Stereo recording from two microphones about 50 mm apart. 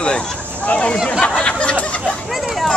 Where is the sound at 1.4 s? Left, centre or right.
Left.